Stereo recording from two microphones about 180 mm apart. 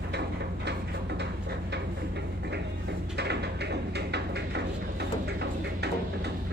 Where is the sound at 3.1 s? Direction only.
70° right (ahead or behind).